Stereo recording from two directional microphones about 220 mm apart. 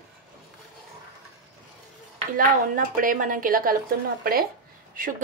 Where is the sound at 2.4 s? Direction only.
40° right (ahead or behind).